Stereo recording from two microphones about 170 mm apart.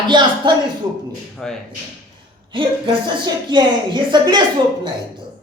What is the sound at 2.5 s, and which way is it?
A man's voice, 30° right (ahead or behind).